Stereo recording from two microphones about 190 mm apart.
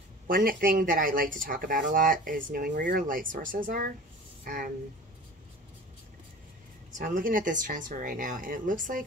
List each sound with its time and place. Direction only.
0.3 s speech: 50° right (ahead or behind)
6.9 s speech: 45° right (ahead or behind)